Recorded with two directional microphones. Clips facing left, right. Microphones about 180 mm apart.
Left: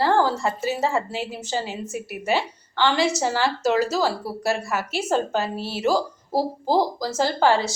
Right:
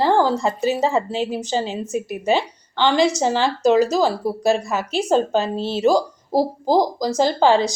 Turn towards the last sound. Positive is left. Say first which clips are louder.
# right 4 dB
turn(degrees=-15)  # may be behind; listen again after turning